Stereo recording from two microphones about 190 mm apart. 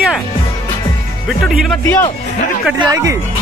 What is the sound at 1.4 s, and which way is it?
Speech, centre (ahead or behind).